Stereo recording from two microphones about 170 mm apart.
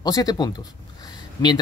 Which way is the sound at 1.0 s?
25° left (ahead or behind).